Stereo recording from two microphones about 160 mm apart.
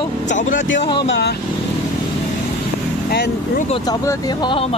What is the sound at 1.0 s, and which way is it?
Speech, 90° left.